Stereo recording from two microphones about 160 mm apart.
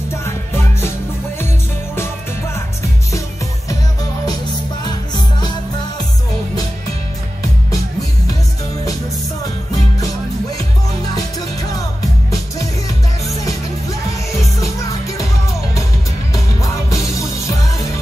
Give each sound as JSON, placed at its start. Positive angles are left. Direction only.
{"t": 4.8, "sound": "music", "side_deg": 30}
{"t": 11.1, "sound": "music", "side_deg": 25}
{"t": 16.9, "sound": "music", "side_deg": 20}